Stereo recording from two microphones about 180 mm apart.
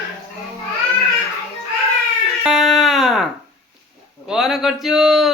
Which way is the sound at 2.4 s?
Centre (ahead or behind).